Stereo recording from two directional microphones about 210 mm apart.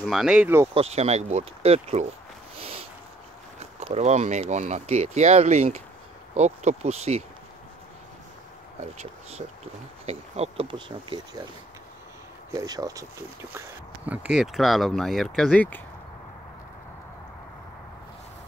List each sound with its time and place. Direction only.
0.0 s speech: centre (ahead or behind)
0.7 s speech: 30° right (ahead or behind)
8.8 s speech: 30° right (ahead or behind)
12.4 s speech: 15° right (ahead or behind); by 15.8 s 5° left (ahead or behind)